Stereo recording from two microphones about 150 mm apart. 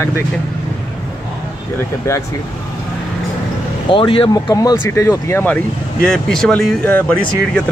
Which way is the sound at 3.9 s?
35° left (ahead or behind).